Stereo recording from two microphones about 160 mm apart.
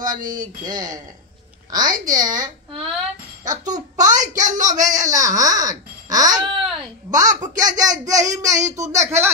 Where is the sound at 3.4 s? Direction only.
25° right (ahead or behind).